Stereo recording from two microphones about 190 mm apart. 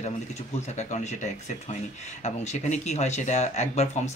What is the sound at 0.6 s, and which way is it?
Speech, 35° left (ahead or behind).